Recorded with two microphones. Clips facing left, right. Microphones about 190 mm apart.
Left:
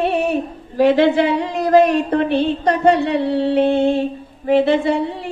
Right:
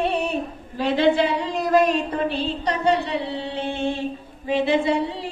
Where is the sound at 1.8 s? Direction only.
60° left (ahead or behind).